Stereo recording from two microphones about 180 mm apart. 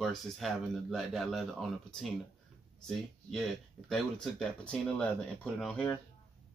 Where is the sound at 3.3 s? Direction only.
Centre (ahead or behind).